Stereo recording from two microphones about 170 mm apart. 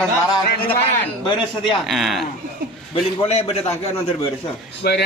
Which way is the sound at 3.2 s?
35° left (ahead or behind).